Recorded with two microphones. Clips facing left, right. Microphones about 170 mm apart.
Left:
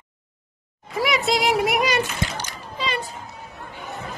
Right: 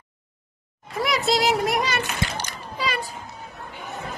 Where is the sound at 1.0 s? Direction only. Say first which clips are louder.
Left 1 dB; centre (ahead or behind).